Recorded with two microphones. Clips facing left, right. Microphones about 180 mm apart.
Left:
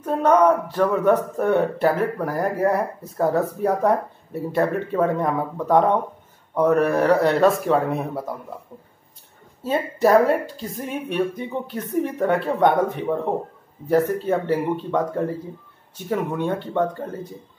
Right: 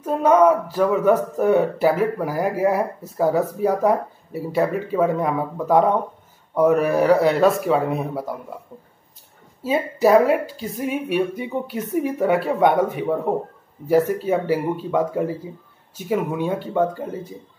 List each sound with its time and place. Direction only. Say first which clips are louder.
0.0 s speech: right 1 dB; 5° right (ahead or behind)
9.6 s speech: right 1 dB; 5° right (ahead or behind)